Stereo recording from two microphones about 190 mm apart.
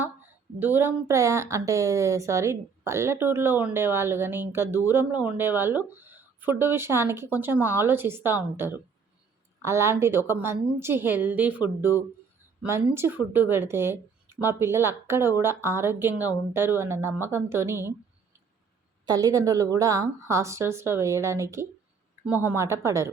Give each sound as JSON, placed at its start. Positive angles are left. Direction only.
{"t": 0.0, "sound": "a woman's voice", "side_deg": -10}
{"t": 19.0, "sound": "a woman's voice", "side_deg": -20}